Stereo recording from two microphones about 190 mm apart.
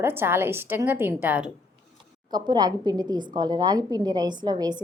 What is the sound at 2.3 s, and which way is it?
A woman's voice, 20° right (ahead or behind).